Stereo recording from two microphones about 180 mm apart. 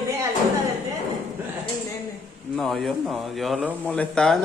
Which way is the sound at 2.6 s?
Centre (ahead or behind).